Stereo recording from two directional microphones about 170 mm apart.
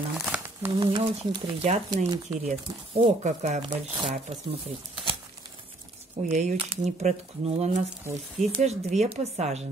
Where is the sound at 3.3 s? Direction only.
45° right (ahead or behind).